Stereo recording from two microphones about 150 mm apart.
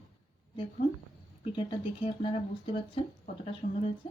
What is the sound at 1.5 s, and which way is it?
Speech, 35° left (ahead or behind).